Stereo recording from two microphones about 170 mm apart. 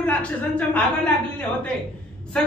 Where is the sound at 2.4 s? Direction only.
5° left (ahead or behind).